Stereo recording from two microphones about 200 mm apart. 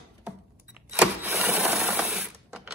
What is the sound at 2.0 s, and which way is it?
Ratchet, 5° right (ahead or behind).